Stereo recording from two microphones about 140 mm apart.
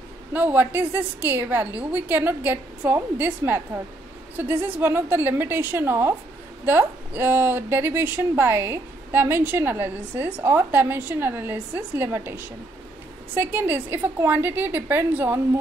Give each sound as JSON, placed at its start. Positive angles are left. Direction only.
{"t": 0.3, "sound": "a woman's voice", "side_deg": -10}
{"t": 13.4, "sound": "a woman's voice", "side_deg": -15}